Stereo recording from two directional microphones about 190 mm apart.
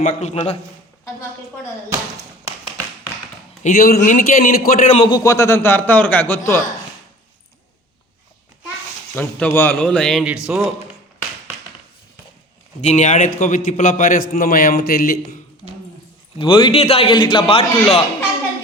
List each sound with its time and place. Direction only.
0.0 s a man's voice: 35° left (ahead or behind)
3.6 s a man's voice: 45° left (ahead or behind)
5.0 s a man's voice: 20° left (ahead or behind)
9.1 s a man's voice: 10° left (ahead or behind)
12.8 s a man's voice: 35° left (ahead or behind)
16.4 s a man's voice: 25° left (ahead or behind)